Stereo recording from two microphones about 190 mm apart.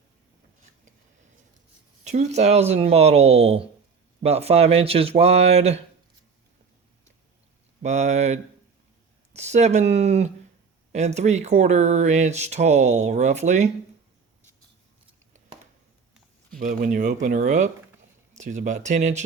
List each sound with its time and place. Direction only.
2.0 s speech: 35° right (ahead or behind)
7.8 s speech: 40° right (ahead or behind)
16.6 s speech: 40° right (ahead or behind)